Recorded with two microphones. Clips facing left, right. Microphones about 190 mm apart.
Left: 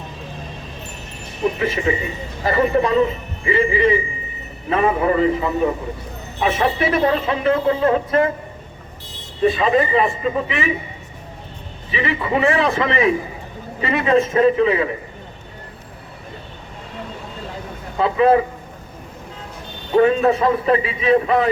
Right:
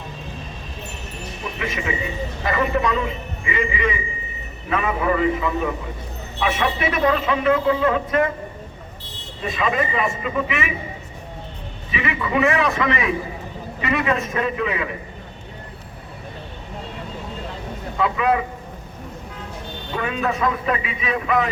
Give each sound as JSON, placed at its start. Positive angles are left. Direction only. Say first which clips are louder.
{"t": 1.5, "sound": "a man's voice", "louder": "left 6 dB", "side_deg": 35}
{"t": 9.4, "sound": "a man's voice", "louder": "left 7 dB", "side_deg": 30}
{"t": 11.9, "sound": "a man's voice", "louder": "left 3 dB", "side_deg": 35}
{"t": 17.9, "sound": "a man's voice", "louder": "left 6 dB", "side_deg": 30}
{"t": 20.0, "sound": "a man's voice", "louder": "left 9 dB", "side_deg": 35}